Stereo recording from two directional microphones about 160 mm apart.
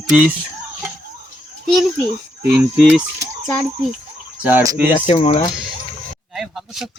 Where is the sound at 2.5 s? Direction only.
10° right (ahead or behind).